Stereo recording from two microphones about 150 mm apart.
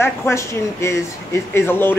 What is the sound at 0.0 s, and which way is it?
Speech, 15° left (ahead or behind).